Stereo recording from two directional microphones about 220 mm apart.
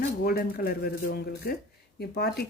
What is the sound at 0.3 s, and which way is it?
Speech, 45° left (ahead or behind).